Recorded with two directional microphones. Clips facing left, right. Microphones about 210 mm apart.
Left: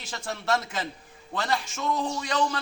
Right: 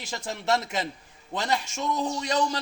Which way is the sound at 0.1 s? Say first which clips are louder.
Right 1 dB; 20° right (ahead or behind).